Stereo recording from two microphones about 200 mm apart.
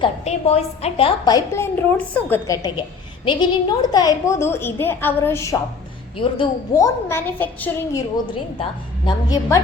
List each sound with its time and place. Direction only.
0.0 s a woman's voice: 30° left (ahead or behind); by 5.5 s 15° left (ahead or behind)
6.1 s a woman's voice: 25° left (ahead or behind); by 8.0 s 10° left (ahead or behind)
9.0 s a woman's voice: 20° left (ahead or behind)